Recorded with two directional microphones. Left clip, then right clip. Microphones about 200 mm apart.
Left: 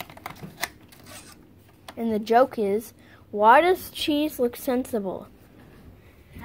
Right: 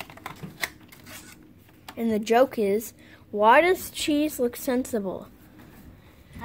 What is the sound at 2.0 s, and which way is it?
A woman's voice, 10° right (ahead or behind).